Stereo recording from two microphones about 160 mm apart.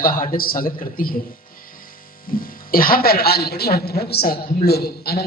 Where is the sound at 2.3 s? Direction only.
60° left (ahead or behind).